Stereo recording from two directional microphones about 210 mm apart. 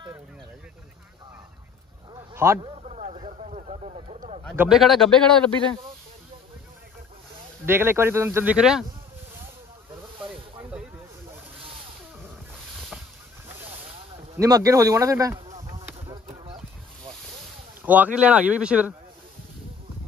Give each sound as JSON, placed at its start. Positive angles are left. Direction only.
{"t": 2.3, "sound": "speech", "side_deg": -10}
{"t": 2.6, "sound": "a sound", "side_deg": -30}
{"t": 4.6, "sound": "a man's voice", "side_deg": 0}
{"t": 7.6, "sound": "speech", "side_deg": -10}
{"t": 10.2, "sound": "snake", "side_deg": -10}
{"t": 14.3, "sound": "speech", "side_deg": -15}
{"t": 15.5, "sound": "a sound", "side_deg": -25}
{"t": 17.8, "sound": "speech", "side_deg": -10}